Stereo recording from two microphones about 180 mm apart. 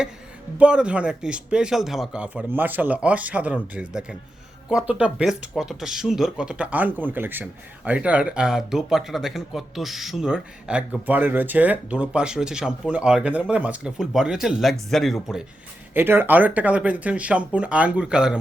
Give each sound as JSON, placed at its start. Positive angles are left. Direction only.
{"t": 0.6, "sound": "a man's voice", "side_deg": -5}